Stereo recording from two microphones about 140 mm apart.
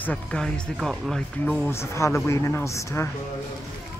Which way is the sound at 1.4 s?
15° left (ahead or behind).